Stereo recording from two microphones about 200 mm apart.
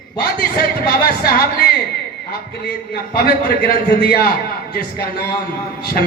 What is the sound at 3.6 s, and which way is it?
A man's voice, 50° left (ahead or behind).